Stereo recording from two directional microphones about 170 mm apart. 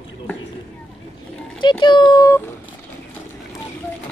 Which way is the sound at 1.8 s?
25° left (ahead or behind).